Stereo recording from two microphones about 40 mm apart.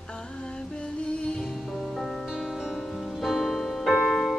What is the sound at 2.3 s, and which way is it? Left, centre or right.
Music, centre.